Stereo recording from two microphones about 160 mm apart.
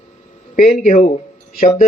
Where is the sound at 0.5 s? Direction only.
60° left (ahead or behind).